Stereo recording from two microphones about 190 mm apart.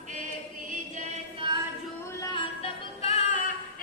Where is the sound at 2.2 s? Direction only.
25° left (ahead or behind).